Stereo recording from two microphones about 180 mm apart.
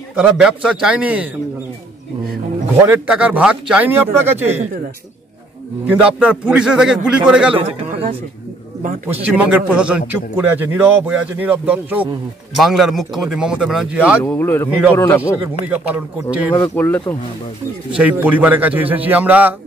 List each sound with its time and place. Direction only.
0.1 s a man's voice: 5° right (ahead or behind)
2.9 s a man's voice: 5° right (ahead or behind)
5.9 s speech: 5° right (ahead or behind)
7.9 s a sound: 30° right (ahead or behind)
9.1 s a man's voice: 10° right (ahead or behind)
14.2 s speech: 10° left (ahead or behind)
15.7 s a man's voice: 10° right (ahead or behind)
16.4 s speech: 10° left (ahead or behind)
17.9 s a man's voice: 10° right (ahead or behind)